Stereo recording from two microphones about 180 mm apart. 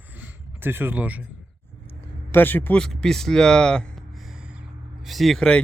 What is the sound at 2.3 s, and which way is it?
Speech, 10° left (ahead or behind).